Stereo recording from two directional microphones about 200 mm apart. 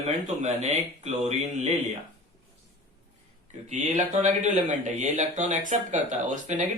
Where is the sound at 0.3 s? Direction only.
35° right (ahead or behind).